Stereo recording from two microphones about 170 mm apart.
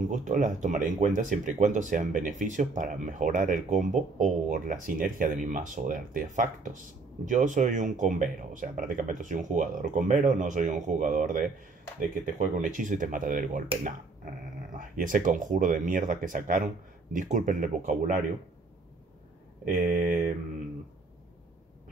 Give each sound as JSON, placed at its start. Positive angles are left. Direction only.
{"t": 0.1, "sound": "speech", "side_deg": -45}
{"t": 14.8, "sound": "speech", "side_deg": -50}
{"t": 19.7, "sound": "speech", "side_deg": -50}